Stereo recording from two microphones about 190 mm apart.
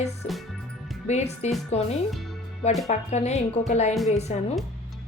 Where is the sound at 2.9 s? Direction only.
35° left (ahead or behind).